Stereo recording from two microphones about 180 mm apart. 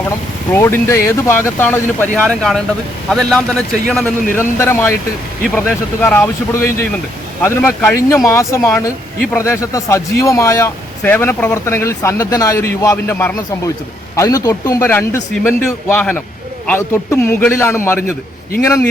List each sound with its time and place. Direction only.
0.5 s a man's voice: 15° left (ahead or behind)
4.4 s speech: 15° left (ahead or behind)